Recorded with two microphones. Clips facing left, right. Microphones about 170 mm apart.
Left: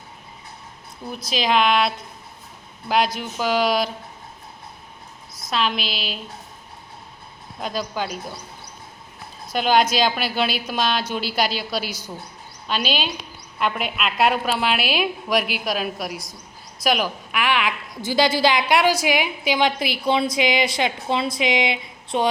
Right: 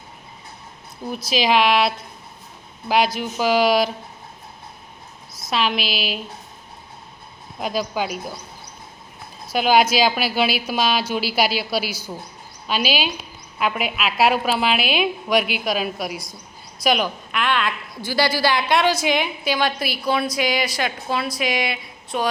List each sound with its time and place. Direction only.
1.2 s a woman's voice: 5° right (ahead or behind)
2.9 s a woman's voice: 5° right (ahead or behind)
5.3 s a woman's voice: 5° right (ahead or behind)
7.6 s speech: 10° right (ahead or behind)
9.5 s a woman's voice: 5° right (ahead or behind); by 22.3 s 20° left (ahead or behind)